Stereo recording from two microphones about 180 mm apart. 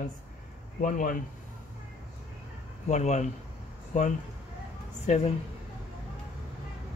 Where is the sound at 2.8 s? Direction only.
40° left (ahead or behind).